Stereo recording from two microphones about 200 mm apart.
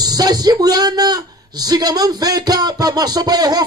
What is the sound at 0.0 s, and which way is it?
Speech, 20° right (ahead or behind).